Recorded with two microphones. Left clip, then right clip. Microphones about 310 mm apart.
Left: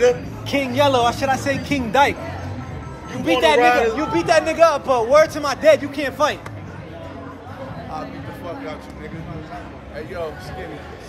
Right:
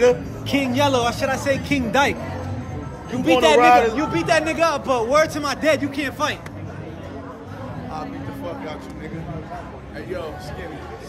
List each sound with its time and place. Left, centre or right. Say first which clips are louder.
0.5 s a man's voice: left 2 dB; centre
3.3 s speech: right 1 dB; centre
3.6 s speech: right 2 dB; right
3.9 s a man's voice: left 2 dB; centre
7.9 s a sound: right 1 dB; centre